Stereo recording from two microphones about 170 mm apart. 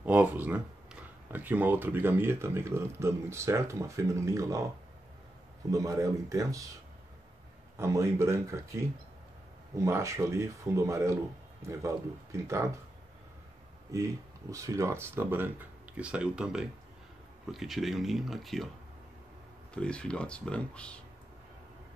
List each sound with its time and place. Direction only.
0.0 s speech: 10° right (ahead or behind)
5.7 s speech: 20° right (ahead or behind)
7.7 s speech: 15° right (ahead or behind)
13.9 s speech: 20° right (ahead or behind); by 18.7 s centre (ahead or behind)
19.7 s speech: 5° left (ahead or behind)